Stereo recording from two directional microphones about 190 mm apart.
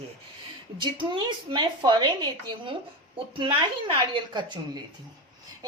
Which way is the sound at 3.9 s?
25° right (ahead or behind).